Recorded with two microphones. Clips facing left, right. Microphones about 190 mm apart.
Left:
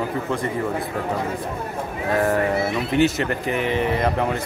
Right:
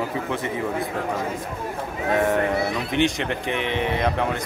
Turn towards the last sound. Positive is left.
turn(degrees=5)  # may be behind; listen again after turning